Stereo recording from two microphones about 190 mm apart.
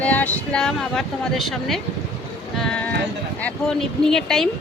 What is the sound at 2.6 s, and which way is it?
Sheep, 5° left (ahead or behind).